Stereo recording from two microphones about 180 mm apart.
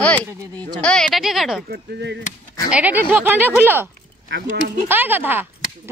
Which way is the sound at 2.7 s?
10° right (ahead or behind).